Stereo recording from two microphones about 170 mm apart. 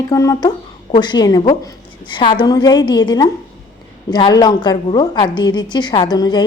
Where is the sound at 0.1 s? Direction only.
20° left (ahead or behind).